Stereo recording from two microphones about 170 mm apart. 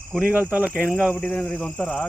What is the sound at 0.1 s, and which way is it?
Speech, 5° right (ahead or behind).